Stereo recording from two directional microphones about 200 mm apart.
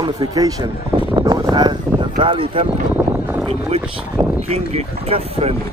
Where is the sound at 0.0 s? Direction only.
20° right (ahead or behind).